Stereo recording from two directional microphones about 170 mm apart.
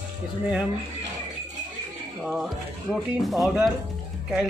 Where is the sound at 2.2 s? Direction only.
Centre (ahead or behind).